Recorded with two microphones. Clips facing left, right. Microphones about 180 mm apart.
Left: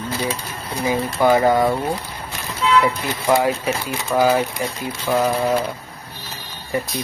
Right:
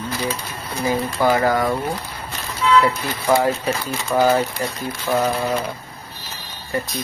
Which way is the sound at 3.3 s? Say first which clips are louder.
Even; 10° left (ahead or behind).